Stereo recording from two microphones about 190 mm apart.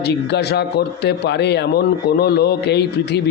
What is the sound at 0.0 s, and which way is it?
Speech, 60° left (ahead or behind).